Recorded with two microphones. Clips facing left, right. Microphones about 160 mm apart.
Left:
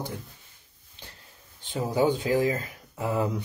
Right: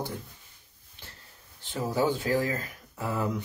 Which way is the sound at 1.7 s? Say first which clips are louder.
Left 3 dB; 15° left (ahead or behind).